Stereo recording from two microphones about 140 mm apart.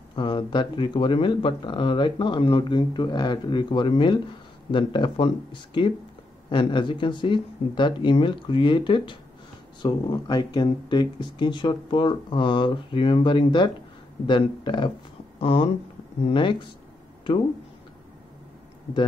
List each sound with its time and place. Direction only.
0.1 s speech: 35° left (ahead or behind)